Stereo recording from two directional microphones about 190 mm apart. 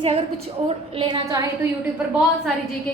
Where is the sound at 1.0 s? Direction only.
25° right (ahead or behind).